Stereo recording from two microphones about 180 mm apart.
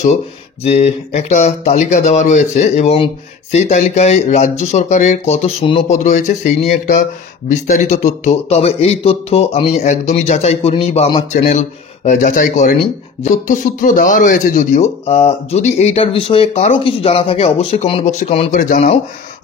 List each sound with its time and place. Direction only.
0.7 s speech: 35° left (ahead or behind)
5.9 s speech: 45° left (ahead or behind)